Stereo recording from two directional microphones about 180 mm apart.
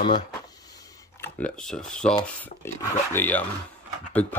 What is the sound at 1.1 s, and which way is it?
Speech, 5° left (ahead or behind).